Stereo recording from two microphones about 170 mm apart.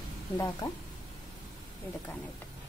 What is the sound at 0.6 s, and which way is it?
Speech, 20° left (ahead or behind).